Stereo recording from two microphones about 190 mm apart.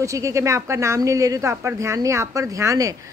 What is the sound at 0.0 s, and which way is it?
Speech, 15° right (ahead or behind).